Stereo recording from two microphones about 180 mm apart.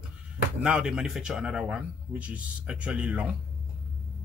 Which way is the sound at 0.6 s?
5° right (ahead or behind).